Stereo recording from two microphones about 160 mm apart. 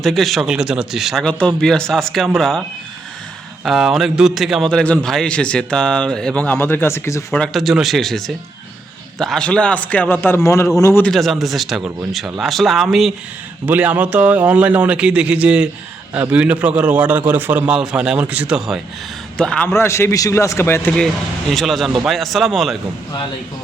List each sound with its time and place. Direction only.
0.0 s speech: centre (ahead or behind)
3.6 s a man's voice: 5° right (ahead or behind); by 7.3 s 15° left (ahead or behind)
7.3 s a man's voice: centre (ahead or behind); by 11.0 s 20° left (ahead or behind)
11.0 s a man's voice: centre (ahead or behind)
21.5 s speech: centre (ahead or behind)